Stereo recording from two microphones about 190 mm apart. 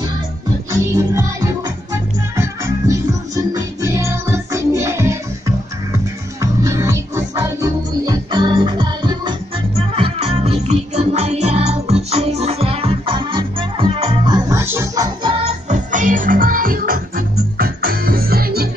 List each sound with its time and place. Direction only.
0.7 s music: 15° right (ahead or behind)
6.4 s music: 15° right (ahead or behind)
15.2 s music: 30° right (ahead or behind); by 18.7 s 55° right (ahead or behind)